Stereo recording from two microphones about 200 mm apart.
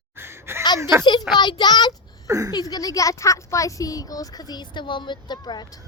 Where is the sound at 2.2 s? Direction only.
15° right (ahead or behind).